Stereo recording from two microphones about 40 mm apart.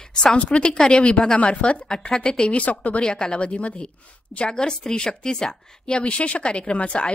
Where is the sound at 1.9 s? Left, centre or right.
Centre.